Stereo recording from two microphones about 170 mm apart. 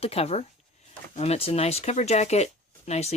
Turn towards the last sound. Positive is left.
turn(degrees=40)  # may be behind; listen again after turning